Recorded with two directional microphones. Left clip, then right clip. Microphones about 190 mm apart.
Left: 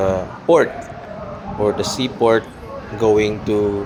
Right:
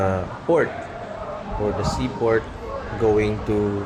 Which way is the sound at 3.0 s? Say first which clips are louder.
Left 4 dB; 25° left (ahead or behind).